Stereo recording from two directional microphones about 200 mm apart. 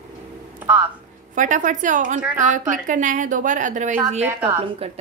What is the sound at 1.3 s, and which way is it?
A woman's voice, 40° right (ahead or behind).